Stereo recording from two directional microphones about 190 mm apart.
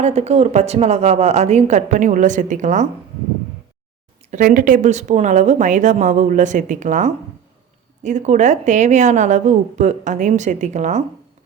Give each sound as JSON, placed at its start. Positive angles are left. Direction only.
{"t": 0.0, "sound": "a woman's voice", "side_deg": -35}
{"t": 4.3, "sound": "a woman's voice", "side_deg": -45}